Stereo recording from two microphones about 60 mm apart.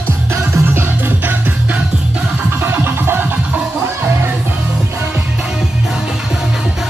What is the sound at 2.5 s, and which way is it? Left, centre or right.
Music, right.